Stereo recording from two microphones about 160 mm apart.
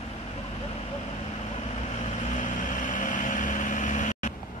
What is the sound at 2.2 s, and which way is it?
Vehicle, 55° left (ahead or behind).